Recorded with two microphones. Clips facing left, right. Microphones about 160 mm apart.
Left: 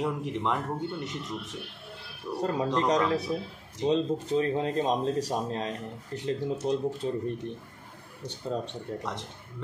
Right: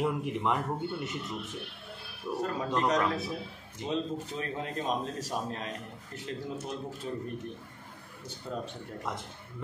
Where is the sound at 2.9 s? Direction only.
35° left (ahead or behind).